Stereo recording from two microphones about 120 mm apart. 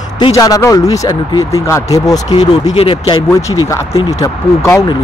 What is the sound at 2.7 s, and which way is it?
Speech, 45° left (ahead or behind).